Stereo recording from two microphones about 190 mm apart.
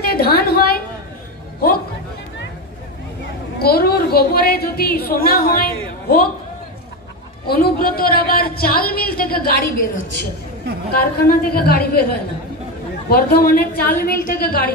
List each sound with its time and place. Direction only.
0.0 s a sound: 55° left (ahead or behind)
3.5 s a woman's voice: 55° left (ahead or behind)
7.4 s a woman's voice: 50° left (ahead or behind)
11.1 s a woman's voice: 55° left (ahead or behind)